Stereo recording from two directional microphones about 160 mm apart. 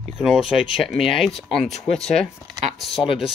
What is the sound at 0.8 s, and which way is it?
Speech, centre (ahead or behind).